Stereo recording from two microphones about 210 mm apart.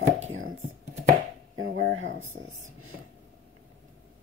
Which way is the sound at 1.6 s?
65° right (ahead or behind).